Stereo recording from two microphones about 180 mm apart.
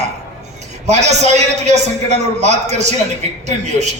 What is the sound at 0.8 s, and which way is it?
A woman's voice, 40° right (ahead or behind).